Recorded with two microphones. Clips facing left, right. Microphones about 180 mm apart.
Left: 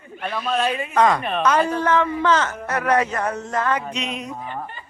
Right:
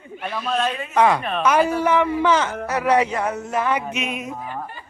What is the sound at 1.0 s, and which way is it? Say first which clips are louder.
A man's voice: right 1 dB; 10° right (ahead or behind).